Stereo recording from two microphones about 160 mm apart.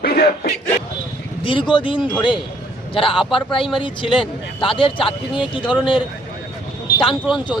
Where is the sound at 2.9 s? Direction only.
35° left (ahead or behind).